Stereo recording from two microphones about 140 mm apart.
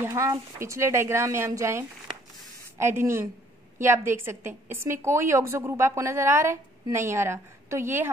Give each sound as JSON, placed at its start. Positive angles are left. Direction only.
{"t": 0.1, "sound": "a woman's voice", "side_deg": -25}